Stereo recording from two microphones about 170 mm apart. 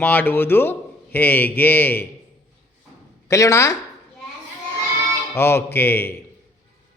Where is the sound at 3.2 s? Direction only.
20° left (ahead or behind).